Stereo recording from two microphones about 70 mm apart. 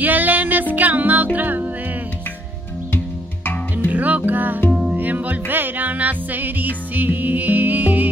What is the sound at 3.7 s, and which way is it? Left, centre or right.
Music, right.